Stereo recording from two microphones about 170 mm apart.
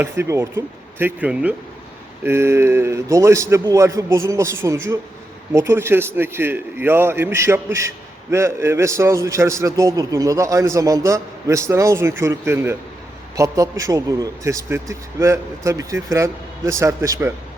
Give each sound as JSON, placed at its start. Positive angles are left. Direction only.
{"t": 0.0, "sound": "a man's voice", "side_deg": -15}